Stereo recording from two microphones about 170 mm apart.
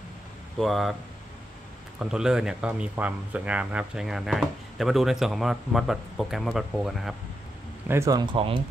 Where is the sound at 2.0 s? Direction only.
5° right (ahead or behind).